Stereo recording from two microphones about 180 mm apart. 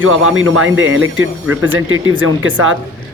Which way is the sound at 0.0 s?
90° right.